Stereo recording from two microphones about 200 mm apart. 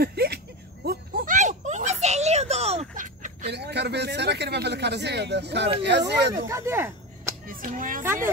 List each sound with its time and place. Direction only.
0.0 s a sound: 50° right (ahead or behind)
3.5 s a man's voice: 55° right (ahead or behind)
6.3 s speech: 15° right (ahead or behind)
7.4 s a child's voice: 45° right (ahead or behind)